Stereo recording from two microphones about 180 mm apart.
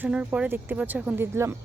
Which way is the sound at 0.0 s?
10° right (ahead or behind).